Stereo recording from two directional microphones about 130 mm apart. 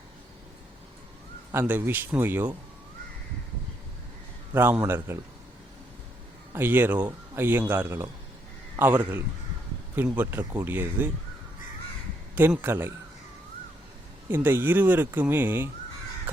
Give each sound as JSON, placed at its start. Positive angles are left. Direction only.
{"t": 1.5, "sound": "a man's voice", "side_deg": -15}
{"t": 4.5, "sound": "a man's voice", "side_deg": -15}
{"t": 6.5, "sound": "a man's voice", "side_deg": -15}
{"t": 12.3, "sound": "a man's voice", "side_deg": -15}
{"t": 14.3, "sound": "a man's voice", "side_deg": -15}